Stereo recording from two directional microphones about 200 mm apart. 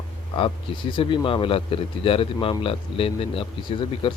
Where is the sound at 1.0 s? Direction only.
25° left (ahead or behind).